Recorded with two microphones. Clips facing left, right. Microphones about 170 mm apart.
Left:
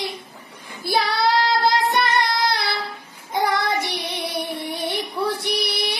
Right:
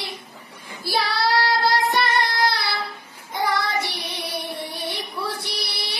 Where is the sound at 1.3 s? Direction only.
20° left (ahead or behind).